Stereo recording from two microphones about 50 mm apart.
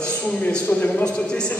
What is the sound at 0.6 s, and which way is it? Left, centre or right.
Speech, left.